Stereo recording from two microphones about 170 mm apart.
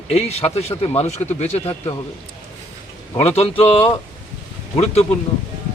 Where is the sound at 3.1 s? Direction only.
40° left (ahead or behind).